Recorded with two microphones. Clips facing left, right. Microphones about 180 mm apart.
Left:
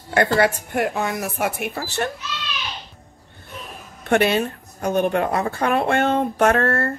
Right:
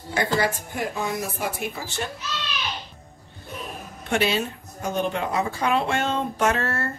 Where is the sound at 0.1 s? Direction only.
65° left (ahead or behind).